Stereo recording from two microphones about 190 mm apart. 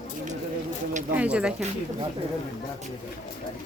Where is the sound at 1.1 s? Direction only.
5° right (ahead or behind).